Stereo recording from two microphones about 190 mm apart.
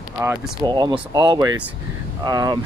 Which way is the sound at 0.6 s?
20° right (ahead or behind).